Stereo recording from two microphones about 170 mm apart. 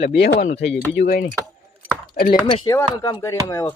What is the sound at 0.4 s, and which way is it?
Speech, 35° left (ahead or behind).